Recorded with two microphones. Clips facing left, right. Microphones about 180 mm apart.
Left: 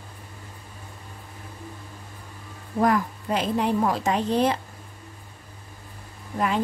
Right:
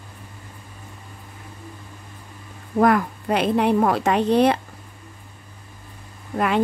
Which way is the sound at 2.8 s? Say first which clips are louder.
Right 4 dB; 65° right (ahead or behind).